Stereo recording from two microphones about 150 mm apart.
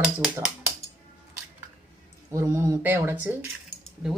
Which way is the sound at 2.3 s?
20° right (ahead or behind).